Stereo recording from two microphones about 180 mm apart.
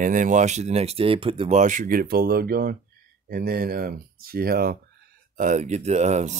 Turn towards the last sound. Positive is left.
turn(degrees=-40)  # may be behind; listen again after turning